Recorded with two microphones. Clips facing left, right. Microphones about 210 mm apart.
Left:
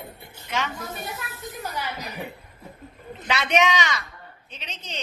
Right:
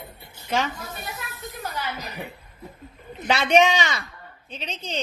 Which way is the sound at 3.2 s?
30° right (ahead or behind).